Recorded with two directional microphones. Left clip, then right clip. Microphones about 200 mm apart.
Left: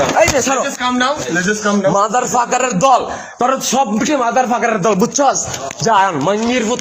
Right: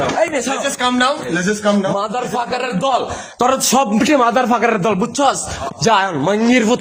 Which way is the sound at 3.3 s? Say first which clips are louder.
Even; 20° right (ahead or behind).